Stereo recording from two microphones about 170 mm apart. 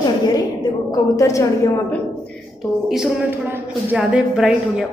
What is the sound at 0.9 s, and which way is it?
A woman's voice, 20° left (ahead or behind).